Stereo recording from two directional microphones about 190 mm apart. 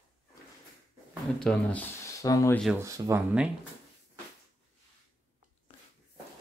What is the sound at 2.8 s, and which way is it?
Speech, 15° right (ahead or behind).